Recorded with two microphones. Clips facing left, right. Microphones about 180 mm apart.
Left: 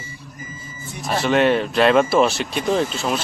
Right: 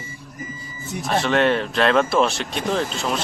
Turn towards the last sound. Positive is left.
turn(degrees=5)  # may be behind; listen again after turning